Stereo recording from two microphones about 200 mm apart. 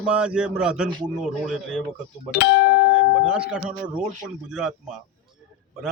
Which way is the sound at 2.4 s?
55° left (ahead or behind).